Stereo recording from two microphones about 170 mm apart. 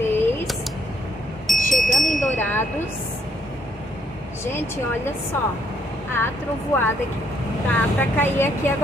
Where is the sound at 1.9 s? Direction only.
45° left (ahead or behind).